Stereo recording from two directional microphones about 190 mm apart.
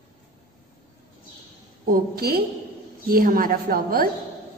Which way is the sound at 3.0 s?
50° right (ahead or behind).